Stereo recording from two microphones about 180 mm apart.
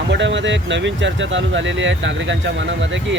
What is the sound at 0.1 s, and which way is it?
Speech, 85° right.